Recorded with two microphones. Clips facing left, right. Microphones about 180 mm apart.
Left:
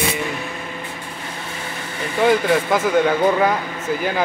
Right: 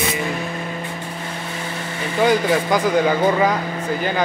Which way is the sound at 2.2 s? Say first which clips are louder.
Left 1 dB; centre (ahead or behind).